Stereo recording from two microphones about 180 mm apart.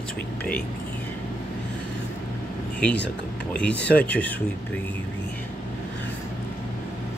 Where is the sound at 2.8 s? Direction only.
5° left (ahead or behind).